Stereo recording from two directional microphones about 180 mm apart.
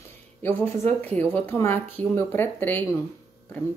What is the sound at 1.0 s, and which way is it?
A woman's voice, 10° left (ahead or behind).